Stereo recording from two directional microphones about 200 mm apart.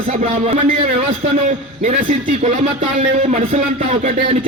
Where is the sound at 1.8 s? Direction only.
30° right (ahead or behind).